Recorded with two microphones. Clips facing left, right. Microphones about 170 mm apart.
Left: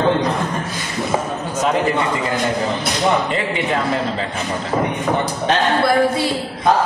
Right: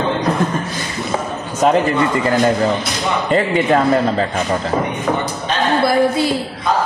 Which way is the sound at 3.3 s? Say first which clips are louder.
Right 6 dB; 40° right (ahead or behind).